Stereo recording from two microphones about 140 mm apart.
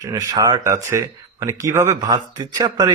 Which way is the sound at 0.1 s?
25° right (ahead or behind).